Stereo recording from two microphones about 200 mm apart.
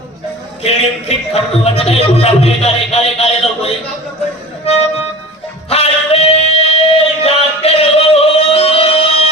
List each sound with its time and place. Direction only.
0.6 s speech: 30° left (ahead or behind)
5.6 s music: 30° left (ahead or behind)